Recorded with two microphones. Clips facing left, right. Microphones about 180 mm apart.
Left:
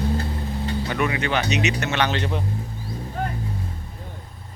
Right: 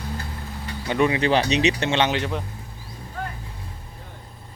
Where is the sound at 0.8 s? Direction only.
25° right (ahead or behind).